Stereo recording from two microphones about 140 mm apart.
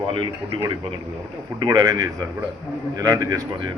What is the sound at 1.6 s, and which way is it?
A man's voice, 25° right (ahead or behind).